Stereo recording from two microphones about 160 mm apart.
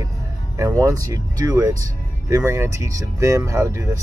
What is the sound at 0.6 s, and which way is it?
Speech, 20° right (ahead or behind).